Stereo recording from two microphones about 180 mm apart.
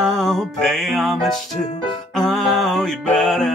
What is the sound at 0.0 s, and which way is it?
Music, centre (ahead or behind).